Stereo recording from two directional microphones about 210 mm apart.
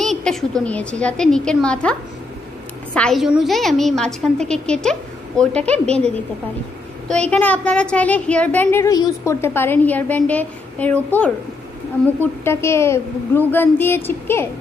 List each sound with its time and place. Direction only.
0.0 s a woman's voice: centre (ahead or behind)